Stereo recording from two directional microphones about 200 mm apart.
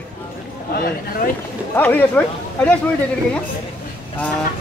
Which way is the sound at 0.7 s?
50° left (ahead or behind).